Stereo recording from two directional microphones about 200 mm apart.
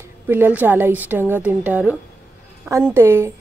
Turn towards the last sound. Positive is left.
turn(degrees=-15)  # may be behind; listen again after turning